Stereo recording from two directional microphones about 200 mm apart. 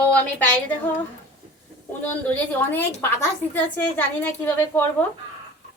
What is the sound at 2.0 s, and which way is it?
A woman's voice, 10° left (ahead or behind).